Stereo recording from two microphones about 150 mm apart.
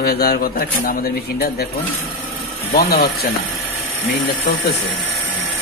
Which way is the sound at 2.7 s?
90° left.